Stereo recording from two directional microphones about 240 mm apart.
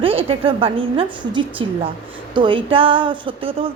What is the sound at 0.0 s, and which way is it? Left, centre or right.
A woman's voice, right.